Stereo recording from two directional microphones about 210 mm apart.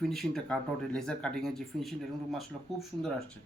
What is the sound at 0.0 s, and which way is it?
Speech, centre (ahead or behind).